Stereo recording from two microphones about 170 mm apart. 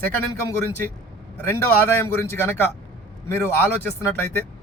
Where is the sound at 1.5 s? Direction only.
15° left (ahead or behind).